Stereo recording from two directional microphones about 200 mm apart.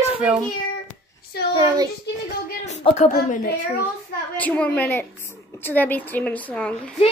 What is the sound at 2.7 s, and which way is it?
Speech, 35° left (ahead or behind).